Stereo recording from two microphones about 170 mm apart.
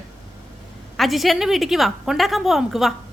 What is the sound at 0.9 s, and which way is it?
Speech, centre (ahead or behind).